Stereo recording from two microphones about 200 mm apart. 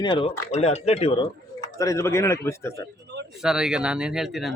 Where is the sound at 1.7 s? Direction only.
15° left (ahead or behind).